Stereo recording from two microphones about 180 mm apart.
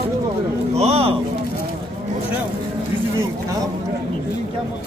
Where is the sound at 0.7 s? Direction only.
35° right (ahead or behind).